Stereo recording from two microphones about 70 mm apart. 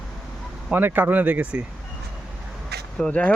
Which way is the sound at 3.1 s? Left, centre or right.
Centre.